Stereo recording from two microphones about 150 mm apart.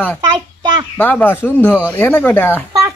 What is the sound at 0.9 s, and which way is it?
Speech, 10° left (ahead or behind).